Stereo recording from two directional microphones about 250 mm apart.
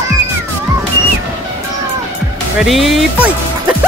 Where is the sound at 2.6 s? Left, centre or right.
Centre.